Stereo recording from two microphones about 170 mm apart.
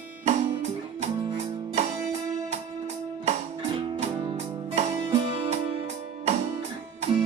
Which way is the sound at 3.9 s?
30° right (ahead or behind).